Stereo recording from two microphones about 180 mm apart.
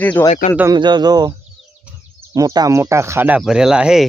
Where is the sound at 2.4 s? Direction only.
20° right (ahead or behind); by 4.1 s 5° right (ahead or behind).